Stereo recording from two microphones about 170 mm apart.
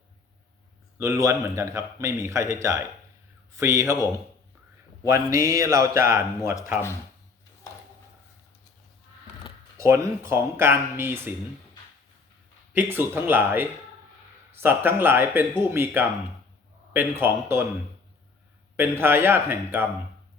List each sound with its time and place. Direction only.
0.9 s a man's voice: 15° right (ahead or behind)
9.7 s a man's voice: 15° right (ahead or behind)
12.7 s a man's voice: 10° right (ahead or behind)
18.8 s a man's voice: 15° right (ahead or behind)